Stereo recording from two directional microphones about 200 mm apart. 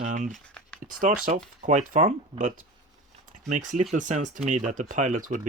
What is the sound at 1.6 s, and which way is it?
Speech, 35° right (ahead or behind).